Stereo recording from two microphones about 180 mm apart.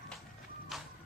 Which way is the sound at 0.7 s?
Centre (ahead or behind).